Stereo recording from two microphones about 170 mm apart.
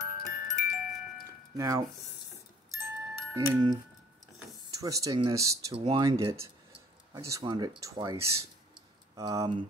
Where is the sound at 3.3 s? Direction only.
20° right (ahead or behind).